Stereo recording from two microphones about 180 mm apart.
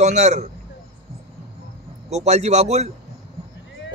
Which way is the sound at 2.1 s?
40° right (ahead or behind).